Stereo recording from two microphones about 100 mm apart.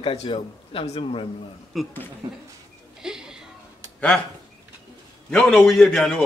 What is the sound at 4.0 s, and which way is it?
Speech, 10° left (ahead or behind).